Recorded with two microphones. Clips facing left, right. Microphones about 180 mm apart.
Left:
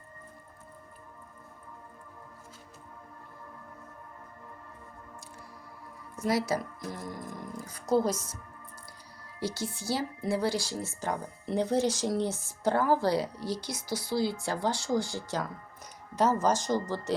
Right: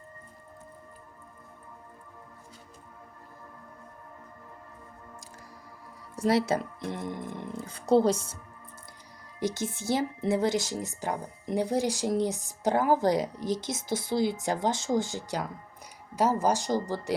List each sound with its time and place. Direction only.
6.1 s speech: 30° right (ahead or behind)
9.4 s a woman's voice: 20° right (ahead or behind)